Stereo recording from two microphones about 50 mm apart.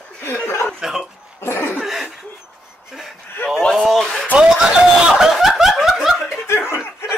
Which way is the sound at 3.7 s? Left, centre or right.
Centre.